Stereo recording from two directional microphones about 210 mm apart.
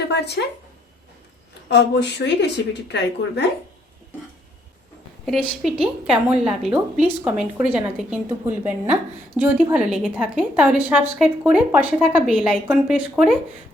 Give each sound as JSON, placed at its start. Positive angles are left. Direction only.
{"t": 0.1, "sound": "a woman's voice", "side_deg": 50}
{"t": 1.7, "sound": "speech", "side_deg": 55}
{"t": 5.2, "sound": "a woman's voice", "side_deg": 0}